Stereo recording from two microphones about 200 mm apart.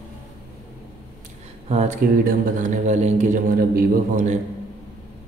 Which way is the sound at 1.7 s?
35° right (ahead or behind).